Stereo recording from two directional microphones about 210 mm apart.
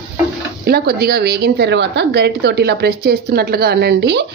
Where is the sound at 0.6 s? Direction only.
50° right (ahead or behind).